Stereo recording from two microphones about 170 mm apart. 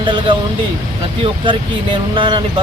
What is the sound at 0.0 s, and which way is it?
Speech, 30° right (ahead or behind).